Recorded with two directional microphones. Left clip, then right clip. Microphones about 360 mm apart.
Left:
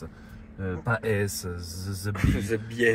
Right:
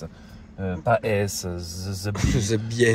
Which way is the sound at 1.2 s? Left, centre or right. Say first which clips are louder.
Right 4 dB; right.